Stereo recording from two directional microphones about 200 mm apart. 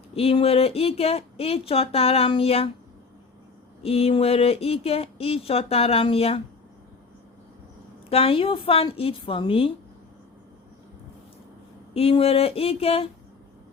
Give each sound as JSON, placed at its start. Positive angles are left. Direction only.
{"t": 0.1, "sound": "speech", "side_deg": 30}
{"t": 3.8, "sound": "speech", "side_deg": 30}
{"t": 8.1, "sound": "speech", "side_deg": 30}
{"t": 11.9, "sound": "speech", "side_deg": 30}